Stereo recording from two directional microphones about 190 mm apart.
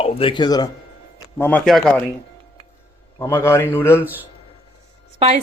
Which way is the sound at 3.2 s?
15° left (ahead or behind).